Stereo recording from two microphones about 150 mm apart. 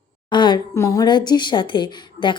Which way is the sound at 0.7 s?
20° left (ahead or behind).